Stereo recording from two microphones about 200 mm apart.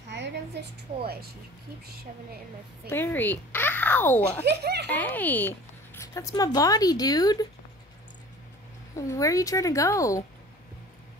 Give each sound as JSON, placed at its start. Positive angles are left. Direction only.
{"t": 0.1, "sound": "a sound", "side_deg": -60}
{"t": 2.9, "sound": "speech", "side_deg": 10}
{"t": 4.5, "sound": "speech", "side_deg": -55}
{"t": 4.8, "sound": "speech", "side_deg": 10}
{"t": 8.9, "sound": "speech", "side_deg": 15}